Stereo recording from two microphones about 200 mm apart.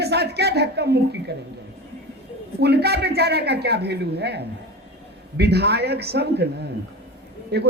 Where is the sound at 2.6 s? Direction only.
55° right (ahead or behind).